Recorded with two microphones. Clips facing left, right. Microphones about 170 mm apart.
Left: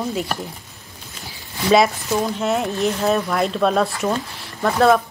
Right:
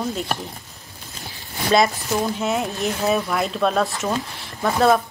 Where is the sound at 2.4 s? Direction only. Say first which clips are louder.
Left 3 dB; centre (ahead or behind).